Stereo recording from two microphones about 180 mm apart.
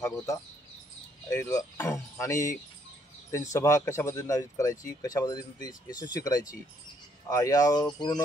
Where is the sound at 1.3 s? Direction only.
20° left (ahead or behind).